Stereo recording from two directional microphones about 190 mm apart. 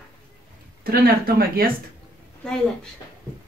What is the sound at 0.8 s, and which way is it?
Speech, 50° right (ahead or behind).